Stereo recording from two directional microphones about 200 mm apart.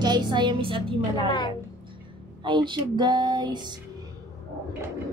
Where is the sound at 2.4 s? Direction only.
25° right (ahead or behind).